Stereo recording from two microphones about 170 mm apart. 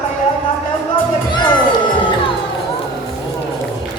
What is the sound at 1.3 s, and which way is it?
Music, 25° left (ahead or behind).